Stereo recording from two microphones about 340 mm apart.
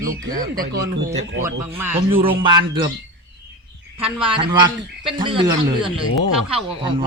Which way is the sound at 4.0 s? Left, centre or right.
Centre.